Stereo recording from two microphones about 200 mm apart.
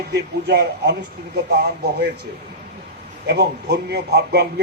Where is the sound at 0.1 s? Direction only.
55° right (ahead or behind).